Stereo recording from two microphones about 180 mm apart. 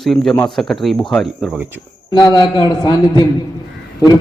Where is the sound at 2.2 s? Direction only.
20° left (ahead or behind).